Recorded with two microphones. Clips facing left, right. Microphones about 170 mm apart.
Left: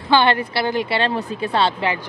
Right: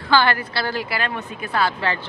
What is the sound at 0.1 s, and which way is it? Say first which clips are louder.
A woman's voice: left 2 dB; 25° left (ahead or behind).